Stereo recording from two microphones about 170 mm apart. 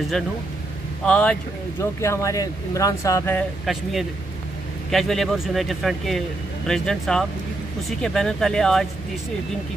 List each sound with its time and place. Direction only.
1.0 s speech: 5° left (ahead or behind)
2.0 s speech: 20° left (ahead or behind)
3.3 s speech: centre (ahead or behind)